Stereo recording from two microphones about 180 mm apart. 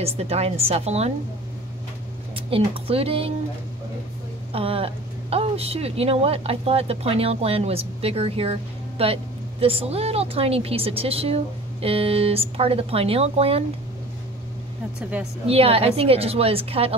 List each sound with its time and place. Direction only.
0.0 s speech: 35° right (ahead or behind)
2.3 s speech: 30° right (ahead or behind)
4.5 s speech: 30° right (ahead or behind)
15.0 s a woman's voice: 5° right (ahead or behind)
15.4 s speech: 35° right (ahead or behind)